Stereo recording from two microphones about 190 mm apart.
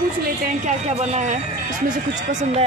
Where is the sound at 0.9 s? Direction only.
40° right (ahead or behind).